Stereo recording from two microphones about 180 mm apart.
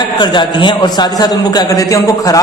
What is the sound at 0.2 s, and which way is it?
A man's voice, 25° left (ahead or behind).